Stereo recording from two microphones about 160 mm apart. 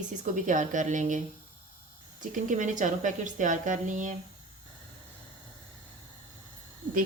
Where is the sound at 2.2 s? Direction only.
55° right (ahead or behind).